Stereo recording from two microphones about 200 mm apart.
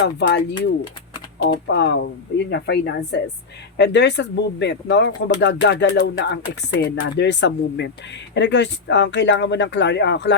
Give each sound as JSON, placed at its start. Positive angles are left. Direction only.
{"t": 0.0, "sound": "speech", "side_deg": 55}